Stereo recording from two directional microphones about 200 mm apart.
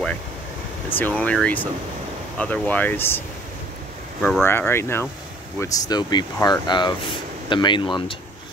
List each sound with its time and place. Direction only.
0.9 s speech: 10° left (ahead or behind)
4.2 s speech: 10° left (ahead or behind); by 8.2 s 25° left (ahead or behind)